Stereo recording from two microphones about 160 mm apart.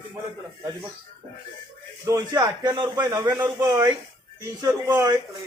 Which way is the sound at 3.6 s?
20° right (ahead or behind).